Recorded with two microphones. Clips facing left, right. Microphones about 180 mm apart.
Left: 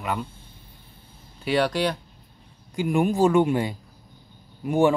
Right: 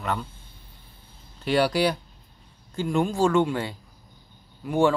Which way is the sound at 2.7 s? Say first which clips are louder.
Left 2 dB; 15° left (ahead or behind).